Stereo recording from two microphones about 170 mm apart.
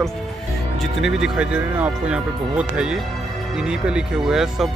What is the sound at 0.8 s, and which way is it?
Speech, centre (ahead or behind).